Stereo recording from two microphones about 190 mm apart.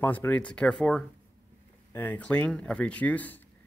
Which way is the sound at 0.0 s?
10° left (ahead or behind).